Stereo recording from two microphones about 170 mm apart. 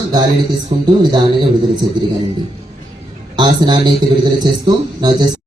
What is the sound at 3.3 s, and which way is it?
A man's voice, 25° right (ahead or behind).